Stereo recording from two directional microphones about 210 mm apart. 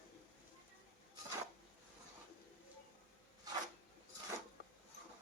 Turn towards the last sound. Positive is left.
turn(degrees=-20)  # may be behind; listen again after turning